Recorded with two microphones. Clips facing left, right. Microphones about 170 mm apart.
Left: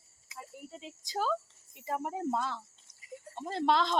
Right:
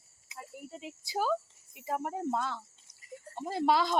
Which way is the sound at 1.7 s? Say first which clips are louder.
Right 1 dB; centre (ahead or behind).